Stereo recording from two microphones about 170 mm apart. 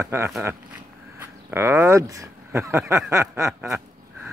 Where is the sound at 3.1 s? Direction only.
15° right (ahead or behind).